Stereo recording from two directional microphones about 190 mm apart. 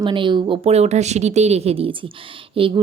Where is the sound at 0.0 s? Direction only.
25° right (ahead or behind).